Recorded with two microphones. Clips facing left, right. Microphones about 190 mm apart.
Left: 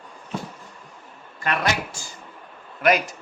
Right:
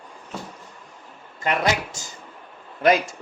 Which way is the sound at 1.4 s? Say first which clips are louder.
Right 2 dB; 20° right (ahead or behind).